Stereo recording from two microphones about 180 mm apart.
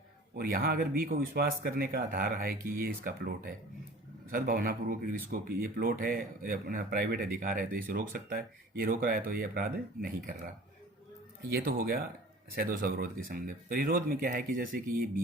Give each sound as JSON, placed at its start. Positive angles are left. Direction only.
{"t": 0.3, "sound": "speech", "side_deg": -55}
{"t": 11.5, "sound": "speech", "side_deg": -55}